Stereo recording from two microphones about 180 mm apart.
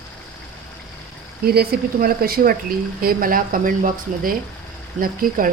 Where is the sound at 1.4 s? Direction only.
60° right (ahead or behind).